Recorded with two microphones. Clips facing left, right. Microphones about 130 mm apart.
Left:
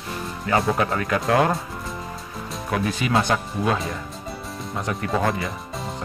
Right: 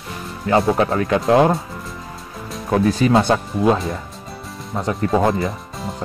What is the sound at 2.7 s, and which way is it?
Speech, 35° right (ahead or behind).